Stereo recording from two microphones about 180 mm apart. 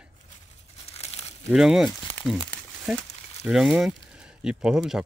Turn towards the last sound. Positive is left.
turn(degrees=-5)  # may be behind; listen again after turning